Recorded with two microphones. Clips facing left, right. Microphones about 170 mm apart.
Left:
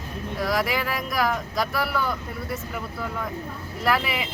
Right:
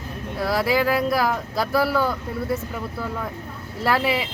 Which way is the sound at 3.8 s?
30° right (ahead or behind).